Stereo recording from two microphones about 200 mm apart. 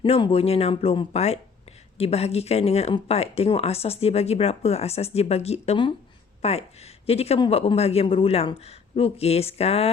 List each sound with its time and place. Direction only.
0.0 s speech: 30° left (ahead or behind)